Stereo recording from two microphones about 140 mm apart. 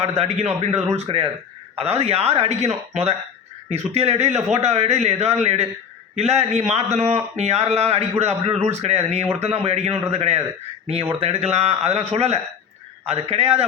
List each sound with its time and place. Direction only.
0.0 s a man's voice: 50° right (ahead or behind)